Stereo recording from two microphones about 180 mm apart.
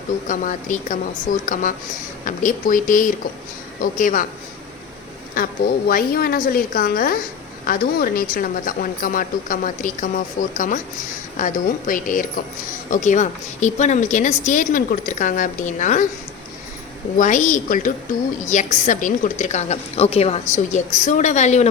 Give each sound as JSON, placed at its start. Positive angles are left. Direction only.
{"t": 0.3, "sound": "speech", "side_deg": 45}
{"t": 5.3, "sound": "a woman's voice", "side_deg": 55}
{"t": 17.2, "sound": "a woman's voice", "side_deg": 45}